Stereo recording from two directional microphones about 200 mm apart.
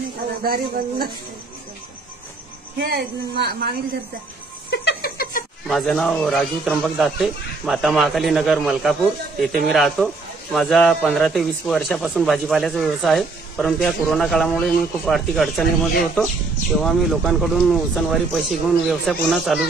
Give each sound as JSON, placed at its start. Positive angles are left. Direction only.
{"t": 0.4, "sound": "speech", "side_deg": -50}
{"t": 2.8, "sound": "speech", "side_deg": -55}
{"t": 4.6, "sound": "a sound", "side_deg": 55}
{"t": 5.7, "sound": "speech", "side_deg": 0}